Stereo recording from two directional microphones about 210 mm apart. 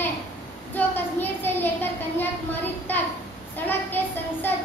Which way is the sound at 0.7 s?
10° left (ahead or behind).